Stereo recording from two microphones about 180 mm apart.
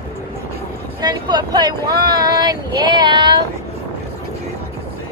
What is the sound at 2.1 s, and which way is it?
Child singing, 20° right (ahead or behind).